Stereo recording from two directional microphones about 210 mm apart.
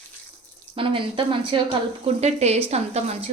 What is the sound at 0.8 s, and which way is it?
A woman's voice, 25° right (ahead or behind).